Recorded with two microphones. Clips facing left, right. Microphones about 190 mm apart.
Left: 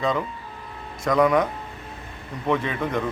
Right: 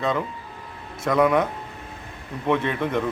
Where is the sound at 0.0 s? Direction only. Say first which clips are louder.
Even; 5° right (ahead or behind).